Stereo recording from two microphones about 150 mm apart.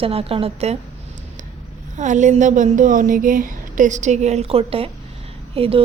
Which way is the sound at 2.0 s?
55° right (ahead or behind).